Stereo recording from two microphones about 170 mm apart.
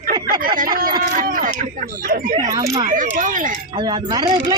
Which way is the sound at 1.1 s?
50° right (ahead or behind).